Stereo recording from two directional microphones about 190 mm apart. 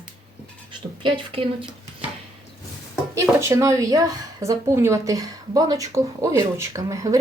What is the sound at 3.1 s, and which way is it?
A woman's voice, 15° right (ahead or behind).